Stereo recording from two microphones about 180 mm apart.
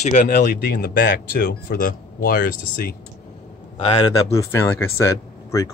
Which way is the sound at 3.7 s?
35° left (ahead or behind).